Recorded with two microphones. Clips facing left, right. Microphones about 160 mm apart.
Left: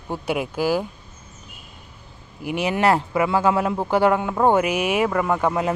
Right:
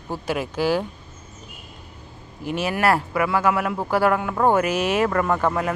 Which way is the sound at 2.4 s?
15° left (ahead or behind).